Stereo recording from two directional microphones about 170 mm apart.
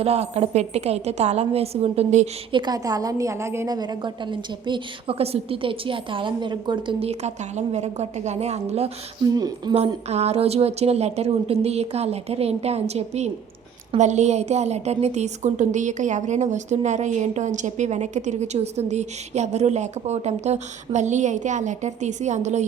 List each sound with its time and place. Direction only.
0.0 s a woman's voice: 40° right (ahead or behind)
2.5 s a woman's voice: 25° right (ahead or behind)
9.2 s a woman's voice: 20° right (ahead or behind)
9.7 s a woman's voice: 40° right (ahead or behind)